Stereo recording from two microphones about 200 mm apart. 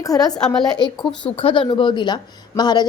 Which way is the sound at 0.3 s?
5° left (ahead or behind).